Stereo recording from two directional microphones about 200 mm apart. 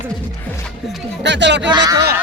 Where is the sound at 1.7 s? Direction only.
20° right (ahead or behind).